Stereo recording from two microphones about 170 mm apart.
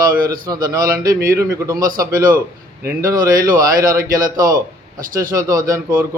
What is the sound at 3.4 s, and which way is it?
A man's voice, 55° right (ahead or behind).